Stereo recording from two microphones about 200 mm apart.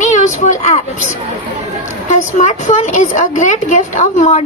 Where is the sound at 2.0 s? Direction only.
35° left (ahead or behind).